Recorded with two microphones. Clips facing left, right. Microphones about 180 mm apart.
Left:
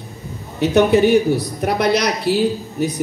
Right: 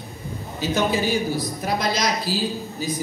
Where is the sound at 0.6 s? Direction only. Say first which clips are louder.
Left 9 dB; 65° left (ahead or behind).